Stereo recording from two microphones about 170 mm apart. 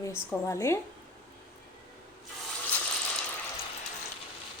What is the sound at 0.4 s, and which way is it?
Speech, 15° left (ahead or behind).